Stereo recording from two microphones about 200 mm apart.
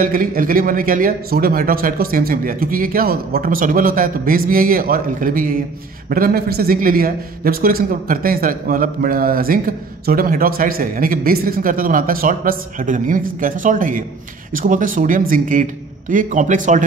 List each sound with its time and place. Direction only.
0.0 s a man's voice: 45° right (ahead or behind)